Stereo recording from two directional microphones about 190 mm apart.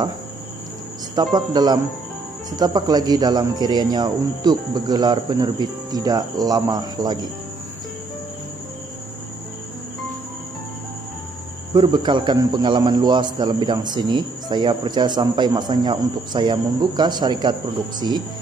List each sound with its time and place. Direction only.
1.1 s a man's voice: 20° right (ahead or behind)
11.7 s a man's voice: 25° right (ahead or behind)